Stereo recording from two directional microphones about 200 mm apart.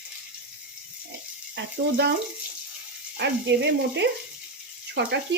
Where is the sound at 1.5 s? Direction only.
55° right (ahead or behind).